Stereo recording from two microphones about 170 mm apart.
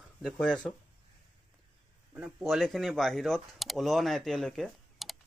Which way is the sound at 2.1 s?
5° right (ahead or behind).